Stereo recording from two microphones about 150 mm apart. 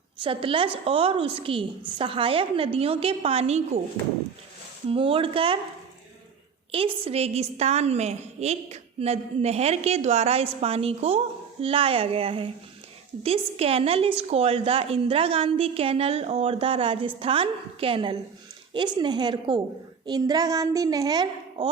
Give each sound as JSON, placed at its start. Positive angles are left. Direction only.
{"t": 0.2, "sound": "a woman's voice", "side_deg": -35}
{"t": 4.9, "sound": "a woman's voice", "side_deg": -35}
{"t": 6.7, "sound": "a woman's voice", "side_deg": -40}